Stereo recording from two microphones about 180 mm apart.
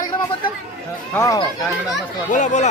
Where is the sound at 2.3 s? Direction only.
40° left (ahead or behind).